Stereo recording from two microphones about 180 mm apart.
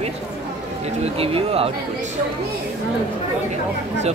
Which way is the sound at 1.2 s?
35° right (ahead or behind).